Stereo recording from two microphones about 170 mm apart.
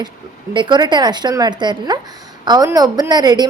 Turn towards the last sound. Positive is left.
turn(degrees=-25)  # may be behind; listen again after turning